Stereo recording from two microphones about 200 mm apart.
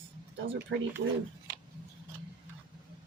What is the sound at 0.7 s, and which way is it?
Speech, 65° right (ahead or behind).